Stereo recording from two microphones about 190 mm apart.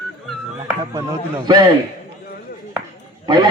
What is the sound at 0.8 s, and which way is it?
Speech, 20° right (ahead or behind).